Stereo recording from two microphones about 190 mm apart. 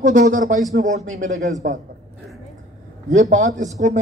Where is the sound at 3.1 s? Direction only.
40° right (ahead or behind).